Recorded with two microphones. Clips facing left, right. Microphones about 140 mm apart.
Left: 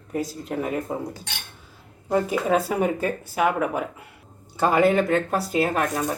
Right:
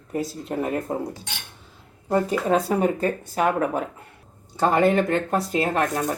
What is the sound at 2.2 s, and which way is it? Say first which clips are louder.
Speech: right 1 dB; 10° left (ahead or behind).